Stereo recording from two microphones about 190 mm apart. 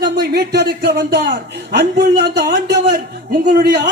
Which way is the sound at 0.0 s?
65° right (ahead or behind).